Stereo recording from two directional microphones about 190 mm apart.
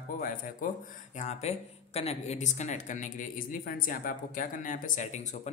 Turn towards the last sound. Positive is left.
turn(degrees=40)  # may be behind; listen again after turning